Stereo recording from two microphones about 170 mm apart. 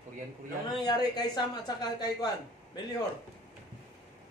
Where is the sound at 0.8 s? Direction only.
25° left (ahead or behind).